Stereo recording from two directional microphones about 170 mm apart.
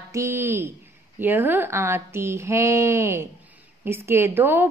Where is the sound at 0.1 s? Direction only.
15° right (ahead or behind).